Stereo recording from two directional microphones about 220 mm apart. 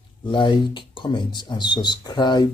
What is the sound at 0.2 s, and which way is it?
Speech, 20° left (ahead or behind).